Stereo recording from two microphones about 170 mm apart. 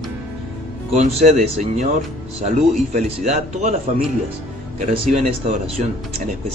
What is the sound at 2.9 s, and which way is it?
Speech, 40° right (ahead or behind).